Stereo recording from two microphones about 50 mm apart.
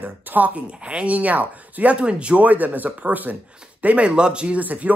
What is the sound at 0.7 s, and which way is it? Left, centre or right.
Speech, right.